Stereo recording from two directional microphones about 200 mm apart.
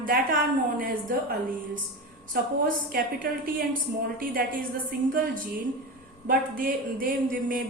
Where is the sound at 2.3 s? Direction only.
45° right (ahead or behind).